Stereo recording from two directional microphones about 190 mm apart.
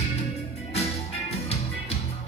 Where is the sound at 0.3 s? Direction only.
35° left (ahead or behind).